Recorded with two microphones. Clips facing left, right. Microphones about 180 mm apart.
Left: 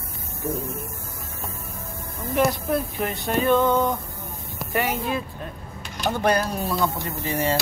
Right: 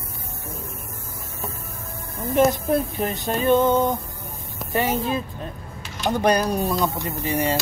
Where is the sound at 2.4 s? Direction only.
25° right (ahead or behind).